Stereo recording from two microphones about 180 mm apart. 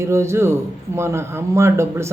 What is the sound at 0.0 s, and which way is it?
A man's voice, 15° right (ahead or behind).